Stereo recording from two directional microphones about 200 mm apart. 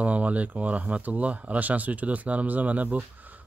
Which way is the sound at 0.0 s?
5° right (ahead or behind).